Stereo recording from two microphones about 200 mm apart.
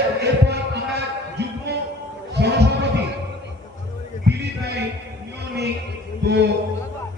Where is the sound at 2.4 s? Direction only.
55° right (ahead or behind).